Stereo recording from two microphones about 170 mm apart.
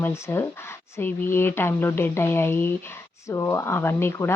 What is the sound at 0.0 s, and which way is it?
Speech, 15° left (ahead or behind).